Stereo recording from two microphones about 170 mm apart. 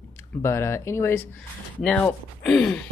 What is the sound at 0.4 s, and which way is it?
Speech, 15° left (ahead or behind).